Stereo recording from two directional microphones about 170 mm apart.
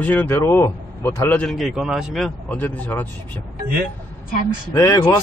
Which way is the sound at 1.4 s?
Centre (ahead or behind).